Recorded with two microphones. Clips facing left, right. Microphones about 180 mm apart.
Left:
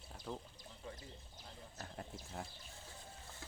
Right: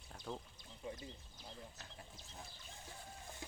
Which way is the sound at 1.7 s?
55° left (ahead or behind).